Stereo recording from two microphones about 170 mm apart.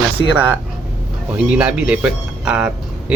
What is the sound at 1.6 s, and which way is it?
Speech, 5° right (ahead or behind).